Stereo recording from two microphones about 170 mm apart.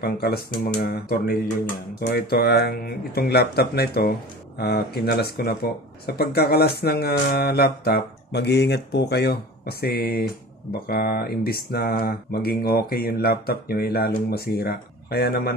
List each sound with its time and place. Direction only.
0.0 s speech: 70° left (ahead or behind)